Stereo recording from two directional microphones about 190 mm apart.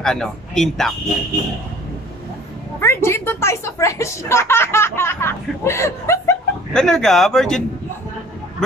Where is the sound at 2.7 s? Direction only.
15° left (ahead or behind).